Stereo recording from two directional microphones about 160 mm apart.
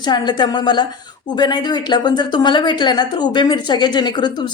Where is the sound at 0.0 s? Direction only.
25° left (ahead or behind).